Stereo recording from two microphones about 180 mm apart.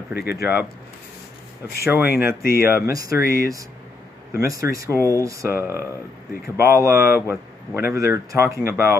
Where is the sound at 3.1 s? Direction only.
55° left (ahead or behind).